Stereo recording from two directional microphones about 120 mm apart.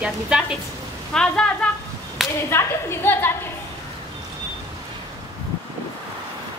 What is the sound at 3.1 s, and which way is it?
Speech, 20° left (ahead or behind).